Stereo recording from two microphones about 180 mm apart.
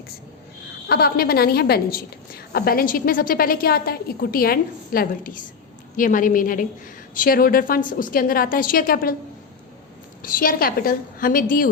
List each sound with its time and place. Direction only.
0.9 s a woman's voice: 60° left (ahead or behind)
10.2 s a woman's voice: 55° left (ahead or behind)